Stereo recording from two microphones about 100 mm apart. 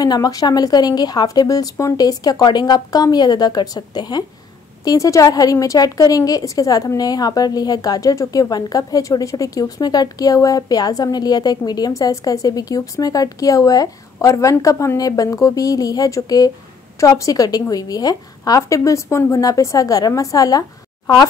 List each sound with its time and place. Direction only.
0.0 s a woman's voice: 40° left (ahead or behind)
4.8 s a woman's voice: 35° left (ahead or behind)